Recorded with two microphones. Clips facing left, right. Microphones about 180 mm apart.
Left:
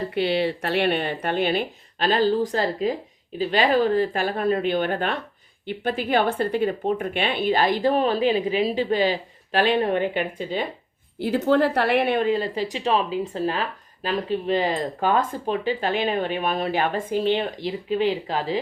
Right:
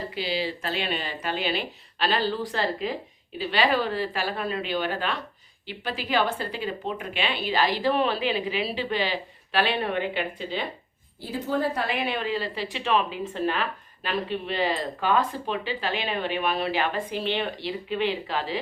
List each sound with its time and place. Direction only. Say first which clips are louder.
0.1 s a woman's voice: left 9 dB; 60° left (ahead or behind)
11.2 s a woman's voice: left 7 dB; 70° left (ahead or behind); by 18.6 s 40° left (ahead or behind)